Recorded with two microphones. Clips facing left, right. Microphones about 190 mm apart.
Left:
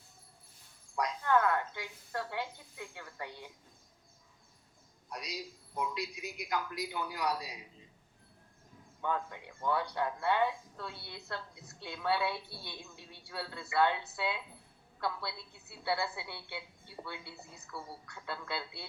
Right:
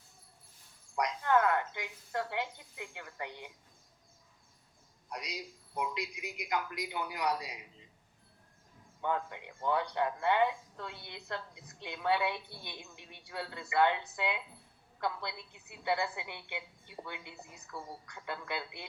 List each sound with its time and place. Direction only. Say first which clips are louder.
0.9 s speech: right 1 dB; 20° right (ahead or behind)
5.0 s a man's voice: even; 20° right (ahead or behind)
9.0 s speech: right 1 dB; 20° right (ahead or behind)